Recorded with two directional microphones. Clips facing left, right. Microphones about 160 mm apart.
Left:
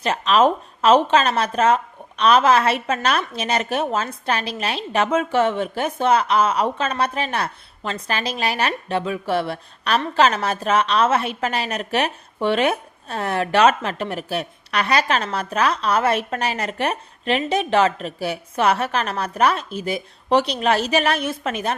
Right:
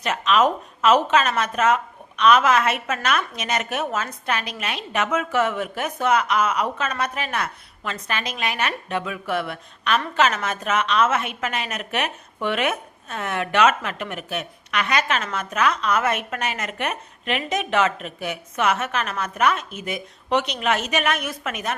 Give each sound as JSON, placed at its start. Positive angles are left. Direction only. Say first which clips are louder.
{"t": 0.0, "sound": "a woman's voice", "louder": "left 3 dB", "side_deg": 30}